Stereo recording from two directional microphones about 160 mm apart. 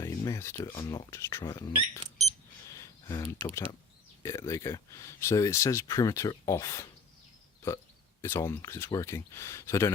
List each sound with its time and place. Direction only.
0.0 s speech: 20° left (ahead or behind)
2.7 s a sound: 20° left (ahead or behind)
3.4 s speech: 20° left (ahead or behind)
8.2 s speech: 15° left (ahead or behind)